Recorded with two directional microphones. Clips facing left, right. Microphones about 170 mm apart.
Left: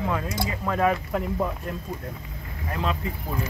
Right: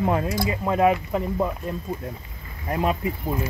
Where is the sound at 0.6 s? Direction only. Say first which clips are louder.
Right 3 dB; 15° right (ahead or behind).